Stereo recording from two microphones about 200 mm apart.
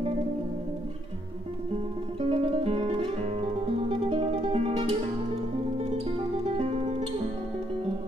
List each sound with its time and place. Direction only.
2.1 s music: 30° right (ahead or behind)
6.4 s music: 30° right (ahead or behind)